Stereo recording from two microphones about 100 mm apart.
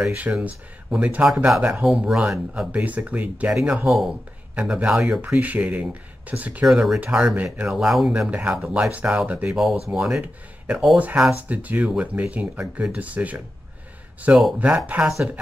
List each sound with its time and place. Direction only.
0.0 s speech: 10° right (ahead or behind)
3.5 s speech: 5° right (ahead or behind)
4.6 s speech: 10° right (ahead or behind)
6.6 s speech: 5° right (ahead or behind)
8.9 s speech: 15° right (ahead or behind)
9.5 s speech: centre (ahead or behind)
11.0 s speech: 15° right (ahead or behind)